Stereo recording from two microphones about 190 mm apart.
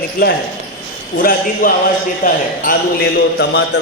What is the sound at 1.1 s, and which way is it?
A man's voice, 45° left (ahead or behind).